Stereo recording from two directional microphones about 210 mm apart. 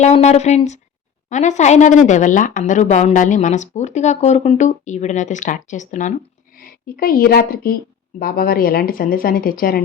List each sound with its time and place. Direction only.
0.0 s a woman's voice: 30° left (ahead or behind)